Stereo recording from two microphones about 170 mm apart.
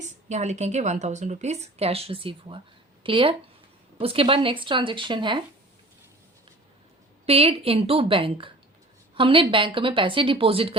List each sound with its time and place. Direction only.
0.3 s speech: 45° right (ahead or behind)
7.3 s speech: 35° right (ahead or behind)